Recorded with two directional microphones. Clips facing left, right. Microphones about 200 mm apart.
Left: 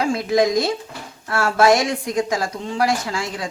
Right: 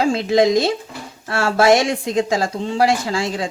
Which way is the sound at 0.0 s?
25° right (ahead or behind).